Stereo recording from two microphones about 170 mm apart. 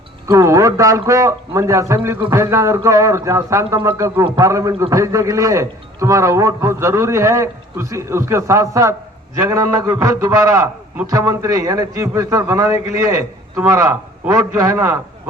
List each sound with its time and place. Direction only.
0.3 s a man's voice: 20° right (ahead or behind)